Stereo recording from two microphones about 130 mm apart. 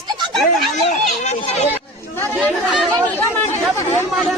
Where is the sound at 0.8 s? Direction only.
55° left (ahead or behind).